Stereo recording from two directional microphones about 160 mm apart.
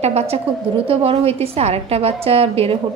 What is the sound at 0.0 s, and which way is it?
A woman's voice, 40° right (ahead or behind).